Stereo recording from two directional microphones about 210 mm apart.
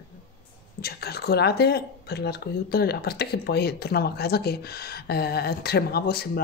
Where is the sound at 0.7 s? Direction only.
50° left (ahead or behind).